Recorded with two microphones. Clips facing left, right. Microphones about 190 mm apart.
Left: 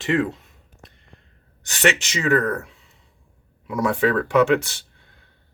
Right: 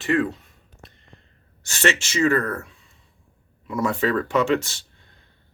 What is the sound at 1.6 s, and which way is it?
Speech, 15° left (ahead or behind).